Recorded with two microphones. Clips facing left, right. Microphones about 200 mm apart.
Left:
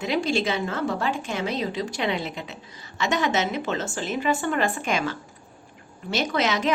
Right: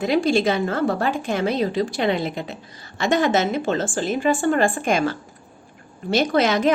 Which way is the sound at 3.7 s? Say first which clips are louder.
Right 6 dB; 30° right (ahead or behind).